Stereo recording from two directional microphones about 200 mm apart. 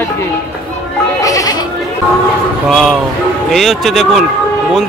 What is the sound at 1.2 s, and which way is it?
Goat, 15° left (ahead or behind).